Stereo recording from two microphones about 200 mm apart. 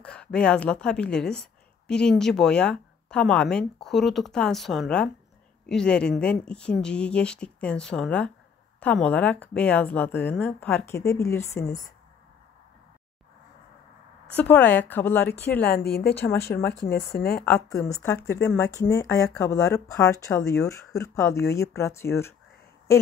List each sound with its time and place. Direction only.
0.0 s a woman's voice: 5° left (ahead or behind)
14.3 s speech: 10° left (ahead or behind)
15.7 s a woman's voice: 50° left (ahead or behind)
16.2 s speech: 10° left (ahead or behind)
17.1 s a woman's voice: 50° left (ahead or behind)
17.5 s speech: 15° left (ahead or behind)